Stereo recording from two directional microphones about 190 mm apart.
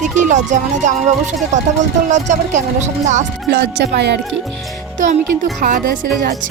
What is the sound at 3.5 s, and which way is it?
Speech, 65° right (ahead or behind).